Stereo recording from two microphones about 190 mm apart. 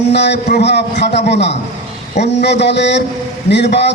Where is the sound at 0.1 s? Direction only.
65° left (ahead or behind).